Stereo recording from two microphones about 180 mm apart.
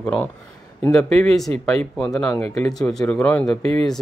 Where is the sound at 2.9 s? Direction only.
5° left (ahead or behind).